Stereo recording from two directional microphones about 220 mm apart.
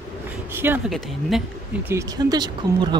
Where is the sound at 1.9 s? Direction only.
20° right (ahead or behind).